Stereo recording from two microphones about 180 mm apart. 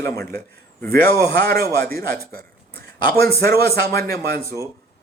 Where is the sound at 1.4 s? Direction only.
60° right (ahead or behind).